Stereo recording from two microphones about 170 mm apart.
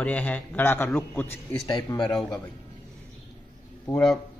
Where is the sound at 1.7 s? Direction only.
25° left (ahead or behind).